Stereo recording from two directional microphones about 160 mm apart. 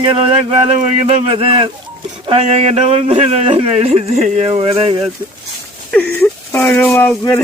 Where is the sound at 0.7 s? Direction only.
40° right (ahead or behind).